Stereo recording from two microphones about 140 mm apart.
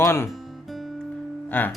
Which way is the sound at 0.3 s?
Centre (ahead or behind).